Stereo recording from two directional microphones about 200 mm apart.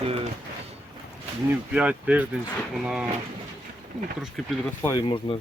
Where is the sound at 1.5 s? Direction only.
5° right (ahead or behind).